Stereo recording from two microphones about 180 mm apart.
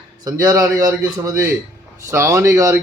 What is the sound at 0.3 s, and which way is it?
Speech, 20° right (ahead or behind).